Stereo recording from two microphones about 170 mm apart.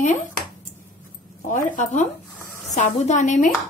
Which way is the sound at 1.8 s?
45° left (ahead or behind).